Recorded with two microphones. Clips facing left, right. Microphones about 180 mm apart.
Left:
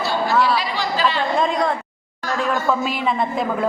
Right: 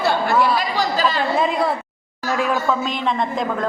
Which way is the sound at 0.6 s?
40° right (ahead or behind).